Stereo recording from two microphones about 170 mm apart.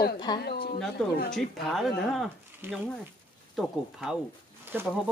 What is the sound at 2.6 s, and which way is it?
Speech, 15° right (ahead or behind).